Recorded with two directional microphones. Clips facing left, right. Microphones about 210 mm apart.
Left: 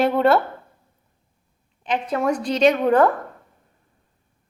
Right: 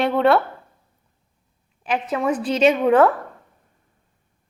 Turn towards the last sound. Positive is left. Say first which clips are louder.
# right 1 dB
turn(degrees=-5)  # may be behind; listen again after turning